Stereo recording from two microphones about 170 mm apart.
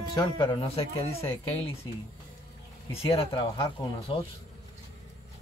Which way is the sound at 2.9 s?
35° left (ahead or behind).